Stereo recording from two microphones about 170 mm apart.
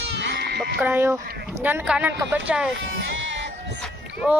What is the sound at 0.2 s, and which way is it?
Sheep, 85° right.